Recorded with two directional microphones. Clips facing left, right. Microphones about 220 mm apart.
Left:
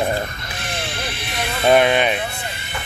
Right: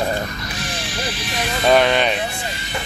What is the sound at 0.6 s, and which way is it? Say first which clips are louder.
Music: left 1 dB; 55° left (ahead or behind).